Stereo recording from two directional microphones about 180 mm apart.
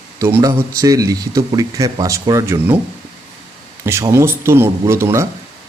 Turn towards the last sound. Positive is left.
turn(degrees=-15)  # may be behind; listen again after turning